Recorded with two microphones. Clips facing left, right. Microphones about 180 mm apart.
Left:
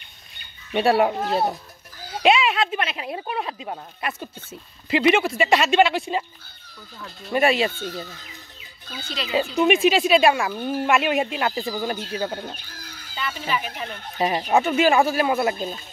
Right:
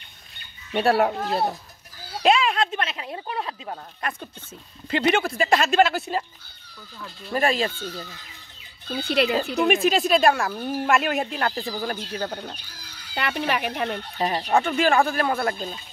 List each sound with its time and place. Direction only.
0.7 s speech: centre (ahead or behind)
8.8 s speech: 60° right (ahead or behind)
9.7 s speech: centre (ahead or behind)
12.5 s chicken: 50° left (ahead or behind)
13.1 s speech: 70° right (ahead or behind)
14.2 s speech: 5° left (ahead or behind)